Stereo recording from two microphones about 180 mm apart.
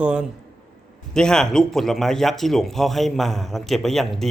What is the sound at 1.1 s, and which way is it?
Speech, 5° left (ahead or behind).